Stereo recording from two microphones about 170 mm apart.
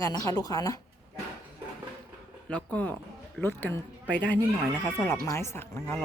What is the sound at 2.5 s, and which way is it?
Speech, 10° left (ahead or behind).